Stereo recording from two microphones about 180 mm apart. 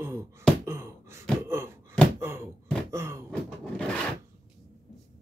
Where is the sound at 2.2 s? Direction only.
15° right (ahead or behind).